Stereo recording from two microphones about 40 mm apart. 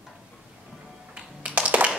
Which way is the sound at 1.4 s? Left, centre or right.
Right.